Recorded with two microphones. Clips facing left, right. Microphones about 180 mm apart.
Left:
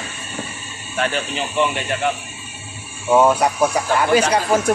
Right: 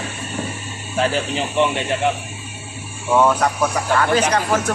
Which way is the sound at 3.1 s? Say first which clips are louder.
Left 2 dB; 10° left (ahead or behind).